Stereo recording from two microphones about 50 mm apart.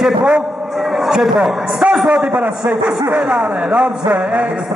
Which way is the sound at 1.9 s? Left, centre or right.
Centre.